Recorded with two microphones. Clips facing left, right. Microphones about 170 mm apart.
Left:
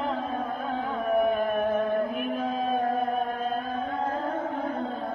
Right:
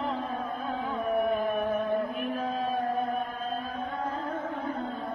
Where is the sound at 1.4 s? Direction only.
Centre (ahead or behind).